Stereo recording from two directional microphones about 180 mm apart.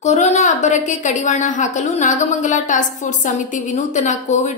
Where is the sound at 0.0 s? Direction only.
40° left (ahead or behind).